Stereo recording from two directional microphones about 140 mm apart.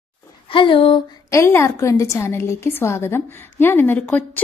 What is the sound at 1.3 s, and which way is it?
A woman's voice, 20° left (ahead or behind).